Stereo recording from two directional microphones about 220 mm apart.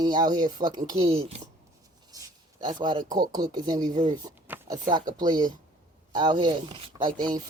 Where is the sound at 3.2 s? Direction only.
15° right (ahead or behind).